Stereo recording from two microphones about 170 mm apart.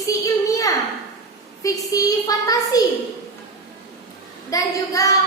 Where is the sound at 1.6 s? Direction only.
20° left (ahead or behind).